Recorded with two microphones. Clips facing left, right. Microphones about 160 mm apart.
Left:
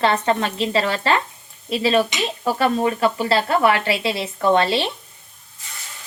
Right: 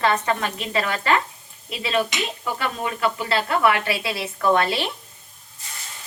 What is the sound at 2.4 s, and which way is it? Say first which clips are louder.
Stir: left 10 dB; 35° left (ahead or behind).